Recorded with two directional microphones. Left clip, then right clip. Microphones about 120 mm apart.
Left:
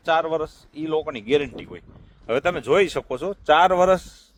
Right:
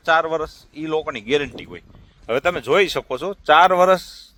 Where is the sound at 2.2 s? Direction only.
45° right (ahead or behind).